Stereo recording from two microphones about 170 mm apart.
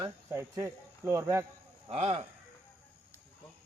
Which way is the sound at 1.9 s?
40° right (ahead or behind).